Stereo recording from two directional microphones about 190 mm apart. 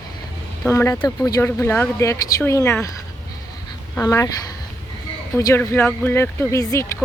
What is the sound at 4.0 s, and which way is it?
Speech, 15° left (ahead or behind).